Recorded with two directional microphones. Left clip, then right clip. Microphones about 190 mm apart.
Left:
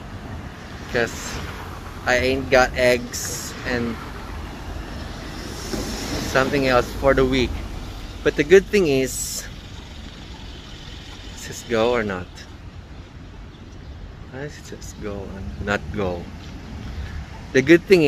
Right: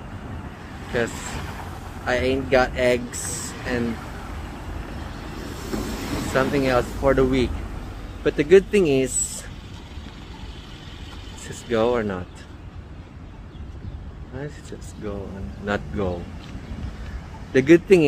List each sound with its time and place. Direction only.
2.0 s speech: 10° right (ahead or behind)
5.6 s waves: 65° right (ahead or behind)
6.3 s speech: 5° right (ahead or behind)
11.4 s speech: 15° right (ahead or behind)
15.0 s speech: 10° right (ahead or behind)
17.5 s speech: 15° right (ahead or behind)